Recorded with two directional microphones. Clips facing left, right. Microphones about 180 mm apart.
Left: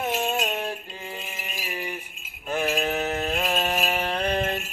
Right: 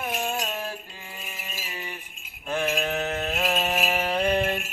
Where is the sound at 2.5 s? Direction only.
Centre (ahead or behind).